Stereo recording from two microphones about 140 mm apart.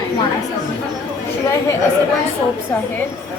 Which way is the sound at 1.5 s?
20° left (ahead or behind).